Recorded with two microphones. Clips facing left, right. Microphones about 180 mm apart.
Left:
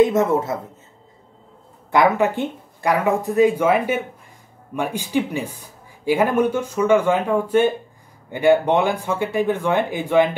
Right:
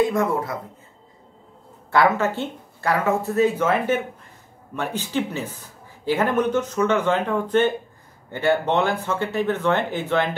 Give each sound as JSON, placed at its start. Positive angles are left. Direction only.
{"t": 0.0, "sound": "speech", "side_deg": 20}
{"t": 1.9, "sound": "a man's voice", "side_deg": 15}